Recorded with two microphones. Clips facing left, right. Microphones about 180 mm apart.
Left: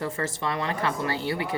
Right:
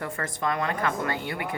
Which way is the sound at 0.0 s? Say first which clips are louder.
Left 1 dB; 30° left (ahead or behind).